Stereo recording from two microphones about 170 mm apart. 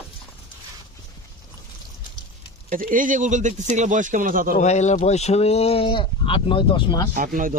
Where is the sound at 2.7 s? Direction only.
55° right (ahead or behind).